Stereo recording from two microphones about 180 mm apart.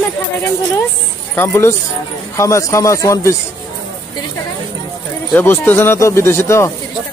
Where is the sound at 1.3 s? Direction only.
15° left (ahead or behind).